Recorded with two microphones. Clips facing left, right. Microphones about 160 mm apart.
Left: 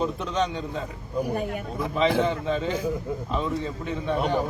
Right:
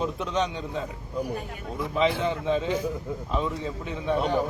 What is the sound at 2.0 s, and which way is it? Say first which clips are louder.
Speech: left 2 dB; centre (ahead or behind).